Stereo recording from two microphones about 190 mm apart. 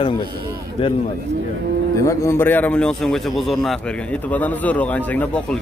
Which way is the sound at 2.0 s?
15° left (ahead or behind).